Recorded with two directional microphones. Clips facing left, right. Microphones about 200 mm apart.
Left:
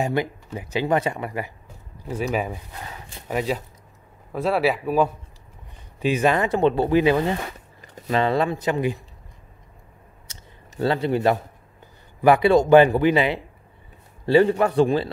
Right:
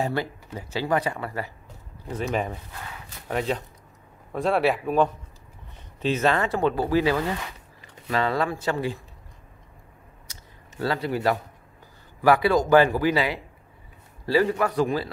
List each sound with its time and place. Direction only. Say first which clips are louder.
0.0 s a man's voice: left 3 dB; 15° left (ahead or behind)
7.3 s zipper: left 5 dB; 40° left (ahead or behind)
8.1 s speech: left 4 dB; 20° left (ahead or behind)
10.8 s speech: left 5 dB; 25° left (ahead or behind)